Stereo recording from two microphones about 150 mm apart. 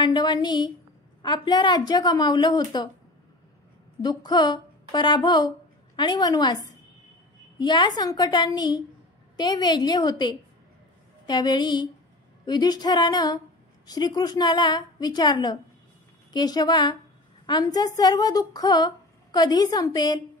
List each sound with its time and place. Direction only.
0.0 s a woman's voice: 30° left (ahead or behind)
4.0 s a woman's voice: 25° left (ahead or behind)